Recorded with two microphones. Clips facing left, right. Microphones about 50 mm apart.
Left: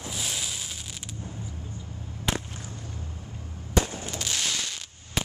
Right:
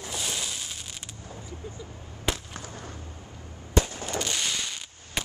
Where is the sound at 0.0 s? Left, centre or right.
Centre.